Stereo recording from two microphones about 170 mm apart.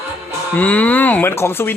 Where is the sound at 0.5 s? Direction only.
10° left (ahead or behind).